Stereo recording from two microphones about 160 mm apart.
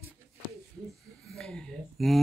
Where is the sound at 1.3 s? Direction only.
5° left (ahead or behind).